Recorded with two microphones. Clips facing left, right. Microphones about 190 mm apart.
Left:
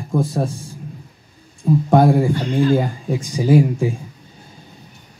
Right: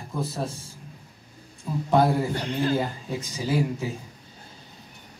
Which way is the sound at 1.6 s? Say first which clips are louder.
Left 7 dB; 50° left (ahead or behind).